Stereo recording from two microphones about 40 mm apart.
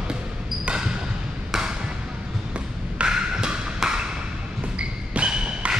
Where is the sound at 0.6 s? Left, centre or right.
Right.